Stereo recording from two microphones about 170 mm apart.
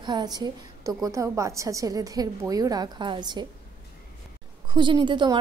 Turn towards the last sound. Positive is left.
turn(degrees=-25)  # may be behind; listen again after turning